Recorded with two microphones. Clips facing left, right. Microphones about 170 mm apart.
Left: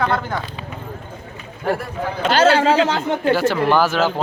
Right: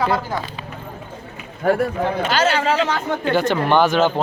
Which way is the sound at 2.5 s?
30° left (ahead or behind).